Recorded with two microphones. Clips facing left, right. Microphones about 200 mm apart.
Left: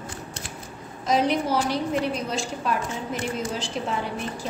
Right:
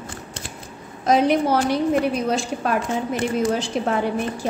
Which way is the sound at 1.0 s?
55° right (ahead or behind).